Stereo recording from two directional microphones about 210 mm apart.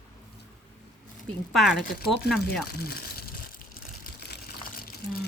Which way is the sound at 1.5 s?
Centre (ahead or behind).